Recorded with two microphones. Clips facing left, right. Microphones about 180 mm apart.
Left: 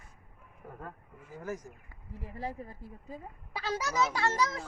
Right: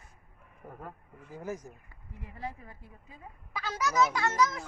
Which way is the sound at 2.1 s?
35° left (ahead or behind).